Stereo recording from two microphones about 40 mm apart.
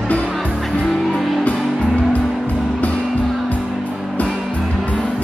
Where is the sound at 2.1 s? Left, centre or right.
Left.